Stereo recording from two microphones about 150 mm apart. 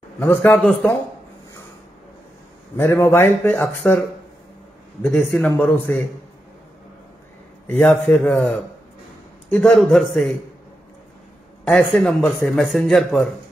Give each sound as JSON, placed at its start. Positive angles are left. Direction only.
{"t": 0.2, "sound": "a man's voice", "side_deg": 15}
{"t": 2.8, "sound": "a man's voice", "side_deg": 15}
{"t": 5.1, "sound": "a man's voice", "side_deg": 10}
{"t": 7.7, "sound": "a man's voice", "side_deg": 5}
{"t": 11.6, "sound": "a man's voice", "side_deg": 5}